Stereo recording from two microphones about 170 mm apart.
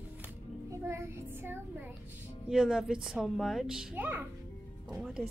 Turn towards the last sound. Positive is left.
turn(degrees=0)  # may be behind; listen again after turning